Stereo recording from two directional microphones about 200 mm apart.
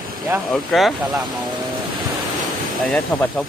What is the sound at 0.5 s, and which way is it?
Speech, centre (ahead or behind).